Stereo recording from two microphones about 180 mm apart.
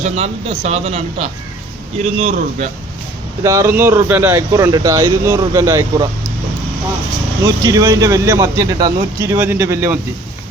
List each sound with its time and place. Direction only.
0.0 s speech: 35° right (ahead or behind)
3.4 s speech: 15° right (ahead or behind)
7.4 s speech: 20° right (ahead or behind)